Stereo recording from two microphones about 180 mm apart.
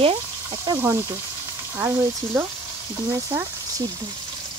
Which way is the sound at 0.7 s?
15° right (ahead or behind).